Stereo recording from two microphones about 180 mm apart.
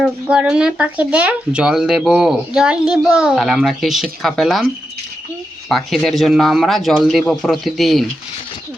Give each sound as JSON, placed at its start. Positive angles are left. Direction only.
{"t": 0.0, "sound": "speech", "side_deg": -5}
{"t": 5.6, "sound": "speech", "side_deg": 0}